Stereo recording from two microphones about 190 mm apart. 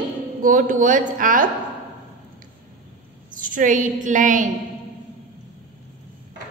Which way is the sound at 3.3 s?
45° right (ahead or behind).